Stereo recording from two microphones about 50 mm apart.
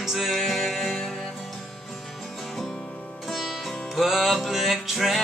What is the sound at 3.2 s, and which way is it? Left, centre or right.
Music, centre.